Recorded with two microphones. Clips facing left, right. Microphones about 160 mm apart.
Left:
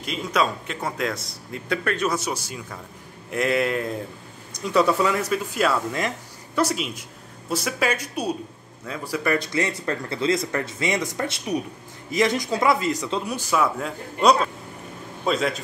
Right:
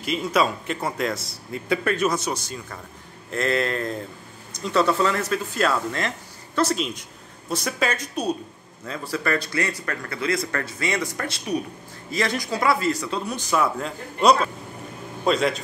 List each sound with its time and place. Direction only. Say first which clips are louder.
0.0 s a man's voice: right 2 dB; 5° right (ahead or behind)